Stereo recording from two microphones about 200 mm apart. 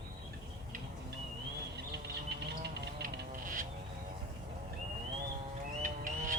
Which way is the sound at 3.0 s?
40° right (ahead or behind).